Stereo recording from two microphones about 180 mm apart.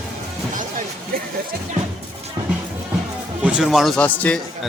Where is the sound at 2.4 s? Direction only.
25° right (ahead or behind).